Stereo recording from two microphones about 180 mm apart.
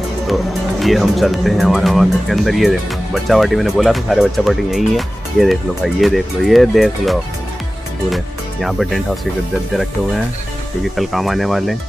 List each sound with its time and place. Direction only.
0.3 s speech: centre (ahead or behind)
11.0 s speech: centre (ahead or behind)